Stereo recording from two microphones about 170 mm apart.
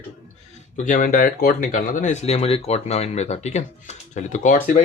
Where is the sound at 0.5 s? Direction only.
45° left (ahead or behind).